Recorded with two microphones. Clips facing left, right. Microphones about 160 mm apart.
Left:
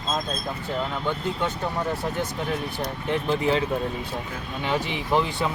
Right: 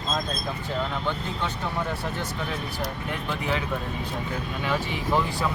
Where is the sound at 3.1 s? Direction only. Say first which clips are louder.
Left 8 dB; 30° left (ahead or behind).